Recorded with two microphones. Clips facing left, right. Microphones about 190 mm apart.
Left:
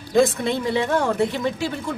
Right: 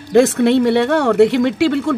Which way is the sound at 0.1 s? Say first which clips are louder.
Right 7 dB; 70° right (ahead or behind).